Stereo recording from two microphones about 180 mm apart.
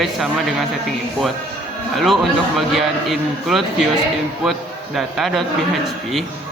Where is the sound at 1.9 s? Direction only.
Centre (ahead or behind).